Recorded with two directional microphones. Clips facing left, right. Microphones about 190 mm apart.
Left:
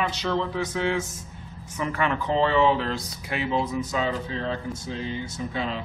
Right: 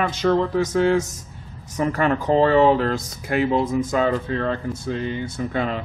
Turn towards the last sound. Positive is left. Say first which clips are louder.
# right 5 dB
turn(degrees=-55)  # may be behind; listen again after turning